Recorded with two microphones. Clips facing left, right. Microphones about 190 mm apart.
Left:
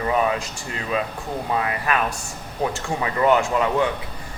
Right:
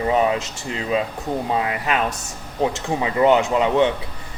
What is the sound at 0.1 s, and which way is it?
Speech, 25° right (ahead or behind).